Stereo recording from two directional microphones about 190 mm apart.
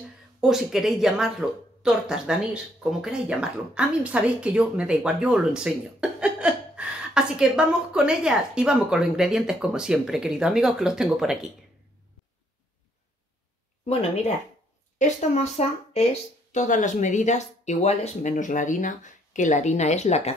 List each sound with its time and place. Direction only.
0.4 s speech: centre (ahead or behind)
13.8 s speech: 35° left (ahead or behind)